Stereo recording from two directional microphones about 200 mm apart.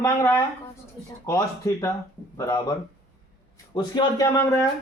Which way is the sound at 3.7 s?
20° left (ahead or behind).